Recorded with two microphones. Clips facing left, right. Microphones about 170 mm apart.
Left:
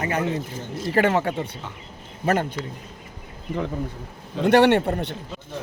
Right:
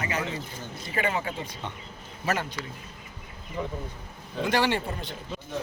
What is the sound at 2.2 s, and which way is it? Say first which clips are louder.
Speech: left 7 dB; 55° left (ahead or behind).